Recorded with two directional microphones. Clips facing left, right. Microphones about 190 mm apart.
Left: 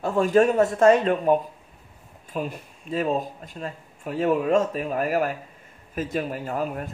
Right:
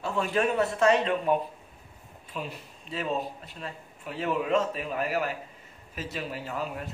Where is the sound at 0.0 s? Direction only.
45° left (ahead or behind).